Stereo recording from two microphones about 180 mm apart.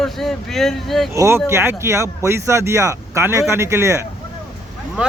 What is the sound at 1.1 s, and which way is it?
Speech, 15° right (ahead or behind).